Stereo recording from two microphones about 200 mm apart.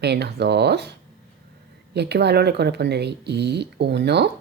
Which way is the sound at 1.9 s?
55° right (ahead or behind).